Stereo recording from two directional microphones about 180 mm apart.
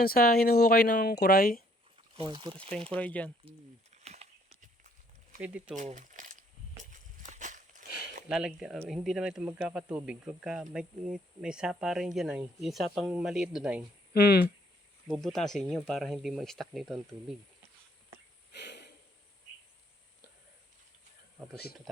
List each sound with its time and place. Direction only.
0.0 s speech: 55° left (ahead or behind)
2.1 s speech: 25° right (ahead or behind)
2.9 s speech: 5° left (ahead or behind)
5.4 s speech: 10° right (ahead or behind)
5.7 s speech: 45° right (ahead or behind)
6.9 s a sound: 45° right (ahead or behind)
8.3 s speech: 5° right (ahead or behind)
14.1 s speech: 65° left (ahead or behind)
15.0 s speech: centre (ahead or behind)
18.5 s a sound: 70° left (ahead or behind)